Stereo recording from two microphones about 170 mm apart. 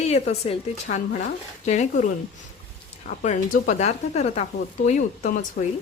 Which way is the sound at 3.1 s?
50° left (ahead or behind).